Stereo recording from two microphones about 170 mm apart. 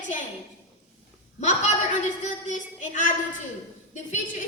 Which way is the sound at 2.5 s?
45° left (ahead or behind).